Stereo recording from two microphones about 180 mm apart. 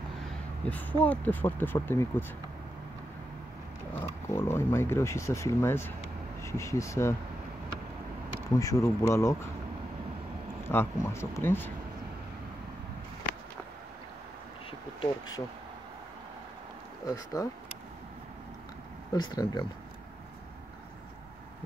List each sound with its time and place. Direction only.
0.7 s speech: 10° left (ahead or behind)
3.9 s speech: 10° left (ahead or behind)
8.5 s speech: 15° left (ahead or behind)
10.7 s speech: 15° left (ahead or behind)
15.0 s speech: 20° left (ahead or behind)
17.1 s speech: 20° left (ahead or behind)
19.1 s speech: 25° left (ahead or behind)